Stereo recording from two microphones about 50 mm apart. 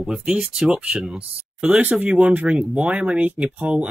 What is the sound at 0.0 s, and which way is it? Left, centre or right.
Speech, centre.